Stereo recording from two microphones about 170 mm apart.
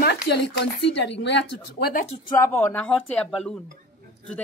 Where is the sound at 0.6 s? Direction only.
85° left.